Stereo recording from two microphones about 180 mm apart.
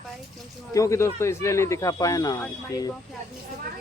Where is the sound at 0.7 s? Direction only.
15° left (ahead or behind).